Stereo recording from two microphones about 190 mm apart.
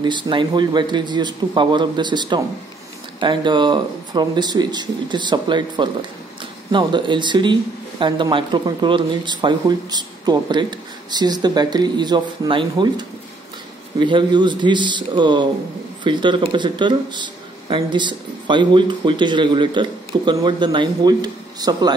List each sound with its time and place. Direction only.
0.0 s speech: 25° right (ahead or behind)